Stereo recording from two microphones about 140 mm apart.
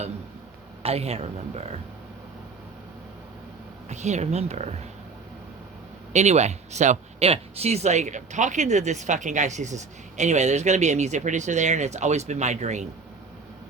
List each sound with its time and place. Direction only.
0.8 s speech: 45° right (ahead or behind)
3.8 s speech: 55° right (ahead or behind)
6.1 s speech: 55° right (ahead or behind)